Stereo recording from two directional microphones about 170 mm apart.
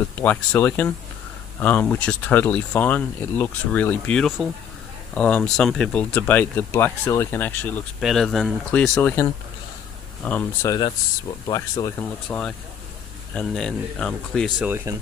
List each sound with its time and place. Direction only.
0.2 s speech: 10° left (ahead or behind)
10.2 s speech: 10° left (ahead or behind)
10.7 s speech: 25° left (ahead or behind)
12.0 s speech: 5° left (ahead or behind)